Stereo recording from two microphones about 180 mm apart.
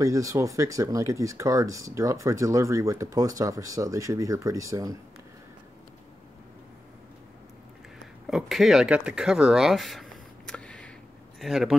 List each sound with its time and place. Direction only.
0.0 s speech: 20° right (ahead or behind)
8.3 s speech: centre (ahead or behind)